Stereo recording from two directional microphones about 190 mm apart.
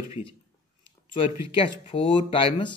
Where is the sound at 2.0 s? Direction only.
25° left (ahead or behind).